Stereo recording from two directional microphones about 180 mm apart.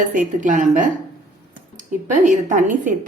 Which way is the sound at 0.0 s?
45° right (ahead or behind).